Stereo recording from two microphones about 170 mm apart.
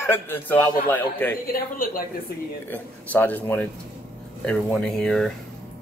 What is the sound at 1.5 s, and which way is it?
Speech, 60° left (ahead or behind).